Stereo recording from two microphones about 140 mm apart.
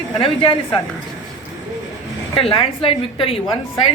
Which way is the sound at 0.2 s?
40° left (ahead or behind).